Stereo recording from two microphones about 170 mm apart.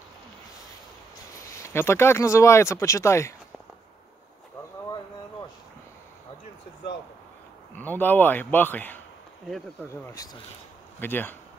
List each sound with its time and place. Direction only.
1.3 s speech: 15° left (ahead or behind)
7.7 s a man's voice: 10° left (ahead or behind)
10.0 s a man's voice: 20° left (ahead or behind)